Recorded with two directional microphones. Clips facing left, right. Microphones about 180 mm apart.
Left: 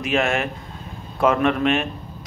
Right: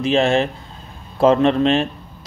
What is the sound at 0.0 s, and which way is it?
Speech, 30° right (ahead or behind).